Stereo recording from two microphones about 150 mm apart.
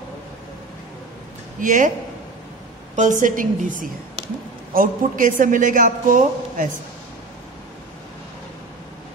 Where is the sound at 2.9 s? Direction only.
55° right (ahead or behind).